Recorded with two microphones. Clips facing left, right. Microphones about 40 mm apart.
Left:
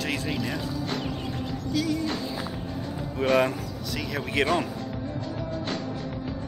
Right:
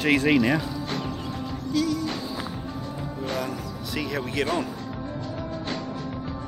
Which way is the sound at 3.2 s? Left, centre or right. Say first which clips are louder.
Left 8 dB; left.